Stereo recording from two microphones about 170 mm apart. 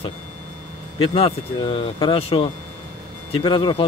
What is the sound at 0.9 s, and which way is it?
Speech, 35° left (ahead or behind).